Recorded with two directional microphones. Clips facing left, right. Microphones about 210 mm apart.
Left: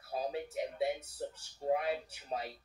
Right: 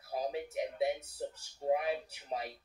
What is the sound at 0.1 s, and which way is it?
Speech, 15° right (ahead or behind).